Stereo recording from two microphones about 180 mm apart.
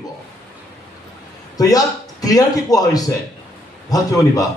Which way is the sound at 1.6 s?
20° left (ahead or behind).